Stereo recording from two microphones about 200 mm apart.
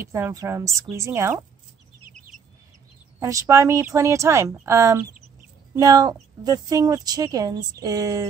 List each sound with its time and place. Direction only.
0.0 s speech: 15° right (ahead or behind)
2.0 s bird: 40° right (ahead or behind)
3.2 s speech: 15° right (ahead or behind)